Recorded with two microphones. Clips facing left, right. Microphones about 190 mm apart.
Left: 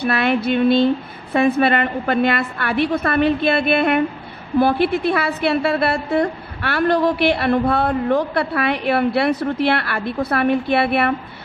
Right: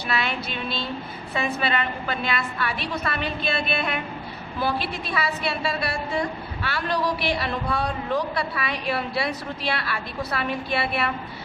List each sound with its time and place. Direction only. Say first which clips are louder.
0.0 s a woman's voice: left 9 dB; 55° left (ahead or behind)